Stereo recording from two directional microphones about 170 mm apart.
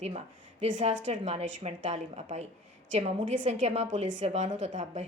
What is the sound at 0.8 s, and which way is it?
A woman's voice, 45° right (ahead or behind).